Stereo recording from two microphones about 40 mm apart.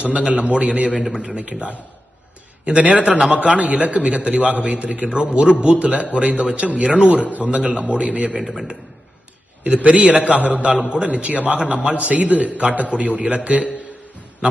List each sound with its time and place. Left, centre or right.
0.0 s a man's voice: right
8.4 s a man's voice: centre
9.6 s a man's voice: right